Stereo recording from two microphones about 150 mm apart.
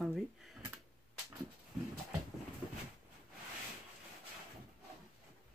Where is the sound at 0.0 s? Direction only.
Centre (ahead or behind).